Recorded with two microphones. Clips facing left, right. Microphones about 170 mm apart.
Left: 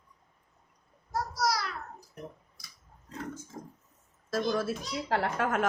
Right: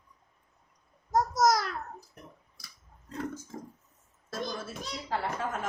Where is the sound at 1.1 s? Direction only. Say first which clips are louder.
Right 6 dB; 45° right (ahead or behind).